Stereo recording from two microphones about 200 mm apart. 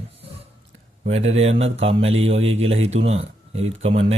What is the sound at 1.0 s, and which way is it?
Speech, 30° right (ahead or behind).